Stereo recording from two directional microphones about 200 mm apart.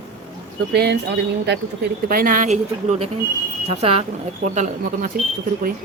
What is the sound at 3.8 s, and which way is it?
Speech, 30° right (ahead or behind).